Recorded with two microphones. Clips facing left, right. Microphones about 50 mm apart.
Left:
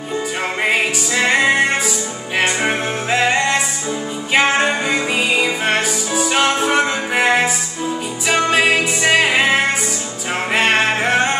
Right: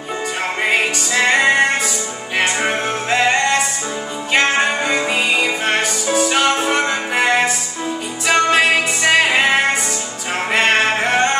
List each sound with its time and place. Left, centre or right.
0.6 s music: centre